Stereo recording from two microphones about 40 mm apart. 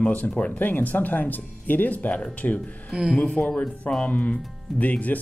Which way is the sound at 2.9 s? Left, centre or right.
Centre.